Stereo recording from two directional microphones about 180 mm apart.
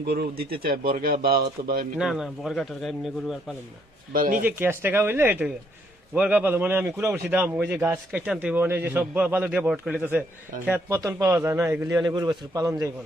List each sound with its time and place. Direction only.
0.0 s speech: 60° right (ahead or behind)
2.0 s a man's voice: centre (ahead or behind)
4.1 s speech: 50° right (ahead or behind)
4.4 s a man's voice: 10° right (ahead or behind)